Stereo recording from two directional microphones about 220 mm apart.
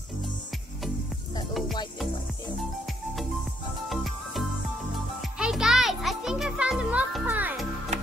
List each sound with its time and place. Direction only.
3.9 s music: centre (ahead or behind)